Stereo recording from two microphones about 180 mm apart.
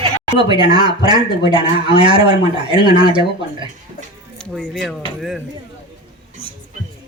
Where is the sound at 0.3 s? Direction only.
25° right (ahead or behind).